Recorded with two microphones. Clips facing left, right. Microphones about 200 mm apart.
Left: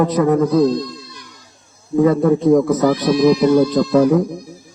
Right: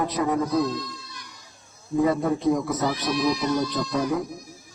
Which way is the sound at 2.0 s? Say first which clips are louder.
Left 9 dB; 50° left (ahead or behind).